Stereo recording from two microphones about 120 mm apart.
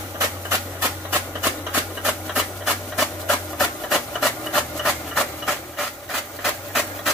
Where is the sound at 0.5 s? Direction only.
15° right (ahead or behind).